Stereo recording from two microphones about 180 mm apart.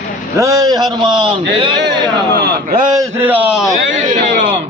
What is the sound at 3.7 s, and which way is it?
Speech, 45° right (ahead or behind).